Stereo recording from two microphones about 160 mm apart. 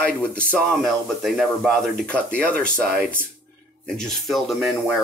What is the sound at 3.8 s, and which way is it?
Speech, centre (ahead or behind).